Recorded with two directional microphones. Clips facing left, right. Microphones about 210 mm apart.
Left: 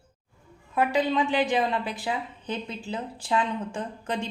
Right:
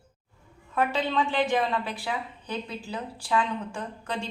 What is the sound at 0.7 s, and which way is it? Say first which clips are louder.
A woman's voice: left 2 dB; 15° left (ahead or behind).